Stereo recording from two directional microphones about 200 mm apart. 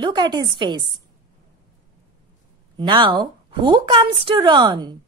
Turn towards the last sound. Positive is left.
turn(degrees=-20)  # may be behind; listen again after turning